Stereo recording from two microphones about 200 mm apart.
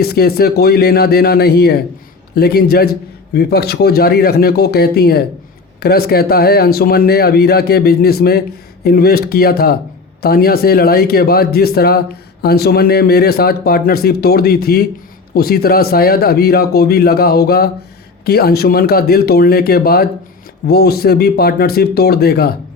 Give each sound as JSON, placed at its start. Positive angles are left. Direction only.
{"t": 0.0, "sound": "speech", "side_deg": 50}